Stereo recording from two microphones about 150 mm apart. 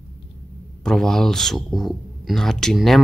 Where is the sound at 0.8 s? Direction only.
5° left (ahead or behind).